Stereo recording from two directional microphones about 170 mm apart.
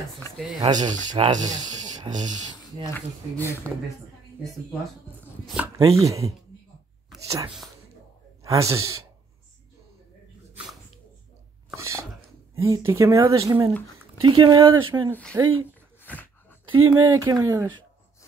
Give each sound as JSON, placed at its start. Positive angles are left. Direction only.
{"t": 0.3, "sound": "speech", "side_deg": 20}
{"t": 0.6, "sound": "speech", "side_deg": -25}
{"t": 2.9, "sound": "speech", "side_deg": 15}
{"t": 6.0, "sound": "speech", "side_deg": -20}
{"t": 11.7, "sound": "speech", "side_deg": -15}
{"t": 14.2, "sound": "speech", "side_deg": -30}
{"t": 15.3, "sound": "speech", "side_deg": -15}
{"t": 16.0, "sound": "a sound", "side_deg": 10}
{"t": 16.6, "sound": "speech", "side_deg": -25}